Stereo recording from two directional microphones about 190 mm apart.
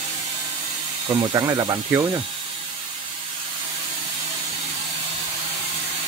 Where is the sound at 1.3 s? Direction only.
20° right (ahead or behind).